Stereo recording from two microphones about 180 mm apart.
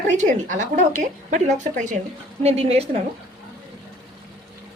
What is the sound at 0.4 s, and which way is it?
A woman's voice, 45° right (ahead or behind).